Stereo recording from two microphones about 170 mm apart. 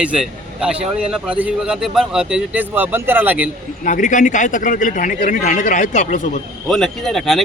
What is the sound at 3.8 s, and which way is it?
A man's voice, 50° left (ahead or behind).